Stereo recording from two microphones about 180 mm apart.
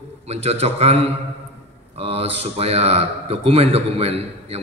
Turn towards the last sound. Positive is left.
turn(degrees=-35)  # may be behind; listen again after turning